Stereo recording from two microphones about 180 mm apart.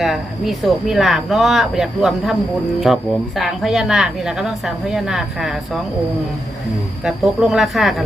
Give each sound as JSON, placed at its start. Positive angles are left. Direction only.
{"t": 0.0, "sound": "a woman's voice", "side_deg": 0}
{"t": 7.0, "sound": "a woman's voice", "side_deg": 0}